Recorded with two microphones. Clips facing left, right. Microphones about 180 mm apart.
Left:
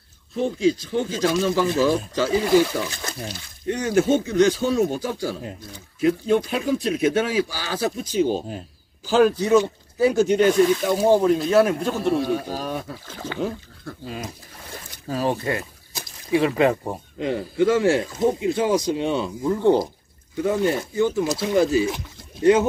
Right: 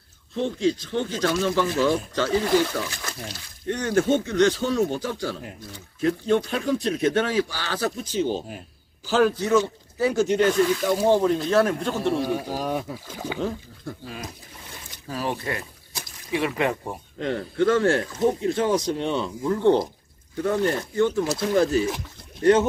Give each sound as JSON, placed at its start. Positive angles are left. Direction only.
{"t": 0.4, "sound": "speech", "side_deg": 10}
{"t": 12.2, "sound": "speech", "side_deg": -10}
{"t": 15.0, "sound": "speech", "side_deg": 30}
{"t": 17.2, "sound": "speech", "side_deg": 10}